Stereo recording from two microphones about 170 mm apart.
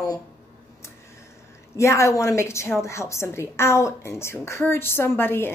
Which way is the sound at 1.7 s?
15° left (ahead or behind).